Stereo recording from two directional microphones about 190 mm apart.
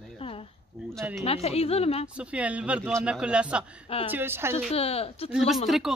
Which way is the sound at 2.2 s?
5° right (ahead or behind).